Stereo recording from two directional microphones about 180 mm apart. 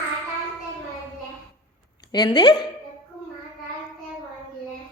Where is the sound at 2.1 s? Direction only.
25° left (ahead or behind).